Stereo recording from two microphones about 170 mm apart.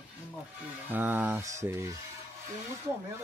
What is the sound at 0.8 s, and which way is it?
A man's voice, 10° right (ahead or behind).